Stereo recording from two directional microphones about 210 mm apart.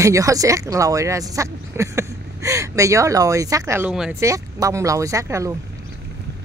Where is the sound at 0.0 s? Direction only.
15° right (ahead or behind).